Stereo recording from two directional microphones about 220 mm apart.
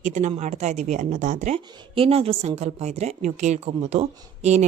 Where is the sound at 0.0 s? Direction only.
30° right (ahead or behind).